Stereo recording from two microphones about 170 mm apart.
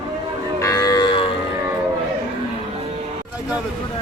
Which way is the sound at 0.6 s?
20° left (ahead or behind).